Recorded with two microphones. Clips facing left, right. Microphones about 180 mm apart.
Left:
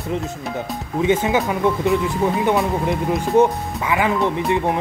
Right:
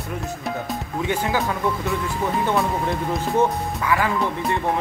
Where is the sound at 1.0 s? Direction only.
20° left (ahead or behind).